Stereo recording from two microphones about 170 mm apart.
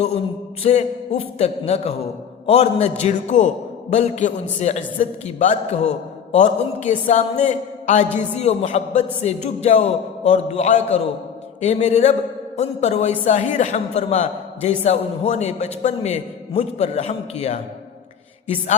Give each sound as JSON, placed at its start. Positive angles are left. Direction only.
{"t": 0.6, "sound": "a woman's voice", "side_deg": 35}